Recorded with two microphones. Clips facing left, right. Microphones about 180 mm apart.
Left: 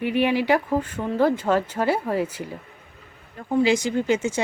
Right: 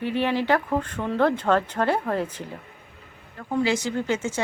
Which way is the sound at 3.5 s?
15° left (ahead or behind).